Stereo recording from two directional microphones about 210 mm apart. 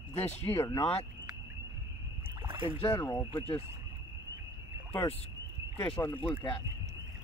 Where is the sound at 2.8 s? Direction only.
20° left (ahead or behind).